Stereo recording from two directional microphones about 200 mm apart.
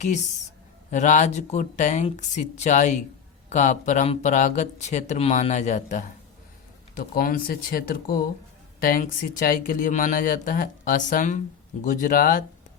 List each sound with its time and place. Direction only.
0.9 s speech: 40° left (ahead or behind)